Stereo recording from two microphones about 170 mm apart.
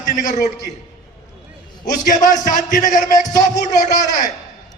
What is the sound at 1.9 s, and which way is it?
A man's voice, 50° left (ahead or behind).